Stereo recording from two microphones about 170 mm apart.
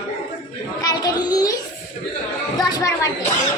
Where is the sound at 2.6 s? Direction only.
20° left (ahead or behind).